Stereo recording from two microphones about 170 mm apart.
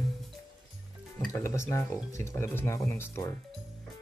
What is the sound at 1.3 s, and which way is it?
Speech, 15° left (ahead or behind).